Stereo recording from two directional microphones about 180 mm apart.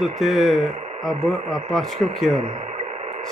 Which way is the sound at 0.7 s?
35° right (ahead or behind).